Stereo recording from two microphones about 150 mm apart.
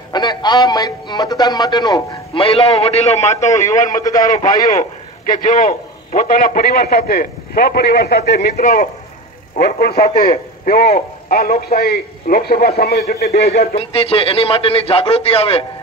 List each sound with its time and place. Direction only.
0.1 s a man's voice: 30° left (ahead or behind); by 3.2 s 45° left (ahead or behind)
3.5 s a man's voice: 20° left (ahead or behind)
5.3 s a man's voice: 60° left (ahead or behind); by 8.8 s 75° left (ahead or behind)
9.6 s a man's voice: 90° left
11.2 s a man's voice: 75° left (ahead or behind)
13.7 s a man's voice: 40° left (ahead or behind)